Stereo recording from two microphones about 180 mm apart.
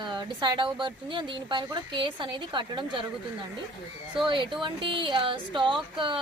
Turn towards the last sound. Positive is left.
turn(degrees=-25)  # may be behind; listen again after turning